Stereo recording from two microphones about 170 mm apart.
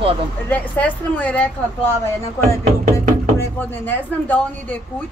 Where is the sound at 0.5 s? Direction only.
10° left (ahead or behind).